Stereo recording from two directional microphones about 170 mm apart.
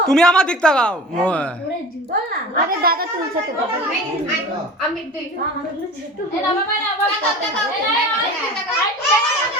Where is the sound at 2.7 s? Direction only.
60° right (ahead or behind).